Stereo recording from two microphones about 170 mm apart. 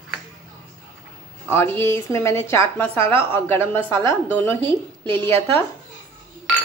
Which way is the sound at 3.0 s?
30° right (ahead or behind).